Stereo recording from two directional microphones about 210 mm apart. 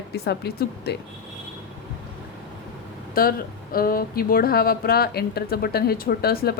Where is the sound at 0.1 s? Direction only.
50° left (ahead or behind).